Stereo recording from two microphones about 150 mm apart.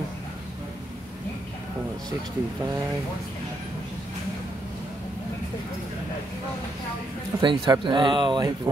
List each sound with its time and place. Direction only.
7.3 s speech: 25° right (ahead or behind)